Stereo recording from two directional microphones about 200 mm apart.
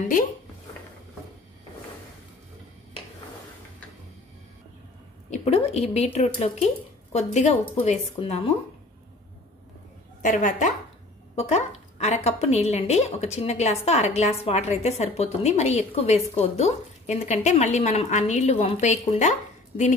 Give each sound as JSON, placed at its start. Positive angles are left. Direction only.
{"t": 5.3, "sound": "a woman's voice", "side_deg": 30}
{"t": 10.2, "sound": "a woman's voice", "side_deg": 40}